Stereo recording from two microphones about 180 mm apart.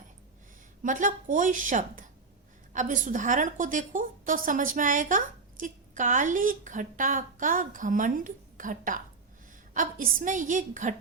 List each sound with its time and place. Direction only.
0.8 s a woman's voice: 45° right (ahead or behind)